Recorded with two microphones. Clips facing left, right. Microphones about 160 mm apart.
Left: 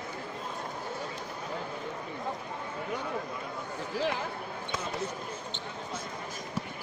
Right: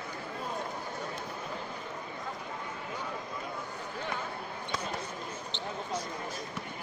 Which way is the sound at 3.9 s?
80° left.